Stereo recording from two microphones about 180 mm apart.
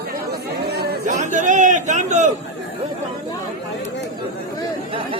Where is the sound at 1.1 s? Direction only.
45° right (ahead or behind).